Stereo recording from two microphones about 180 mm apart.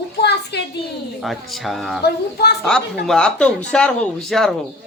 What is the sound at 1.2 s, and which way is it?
Speech, centre (ahead or behind).